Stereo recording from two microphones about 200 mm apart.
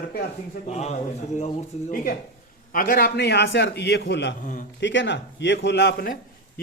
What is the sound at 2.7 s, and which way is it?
A man's voice, 45° left (ahead or behind).